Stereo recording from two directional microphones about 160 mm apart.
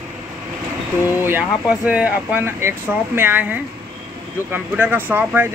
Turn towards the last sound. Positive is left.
turn(degrees=-10)  # may be behind; listen again after turning